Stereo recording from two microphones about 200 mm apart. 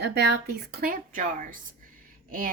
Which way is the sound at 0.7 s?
45° right (ahead or behind).